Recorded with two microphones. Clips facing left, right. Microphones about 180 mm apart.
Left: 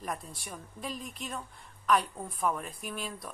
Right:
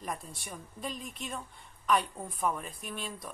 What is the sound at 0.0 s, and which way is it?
Speech, centre (ahead or behind).